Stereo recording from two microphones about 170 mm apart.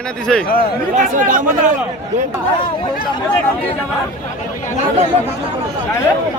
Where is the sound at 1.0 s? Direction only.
50° right (ahead or behind).